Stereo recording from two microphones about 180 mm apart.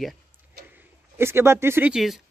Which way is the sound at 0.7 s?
15° right (ahead or behind).